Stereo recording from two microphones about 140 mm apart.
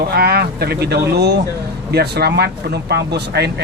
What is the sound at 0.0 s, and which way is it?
Speech, 90° right.